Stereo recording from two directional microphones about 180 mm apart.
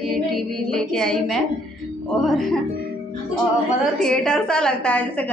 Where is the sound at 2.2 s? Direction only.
Centre (ahead or behind).